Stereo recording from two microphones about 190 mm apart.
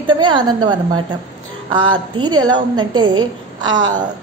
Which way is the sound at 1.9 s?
25° right (ahead or behind).